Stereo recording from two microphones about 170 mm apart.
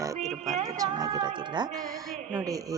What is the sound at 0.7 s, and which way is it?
Speech, 20° right (ahead or behind).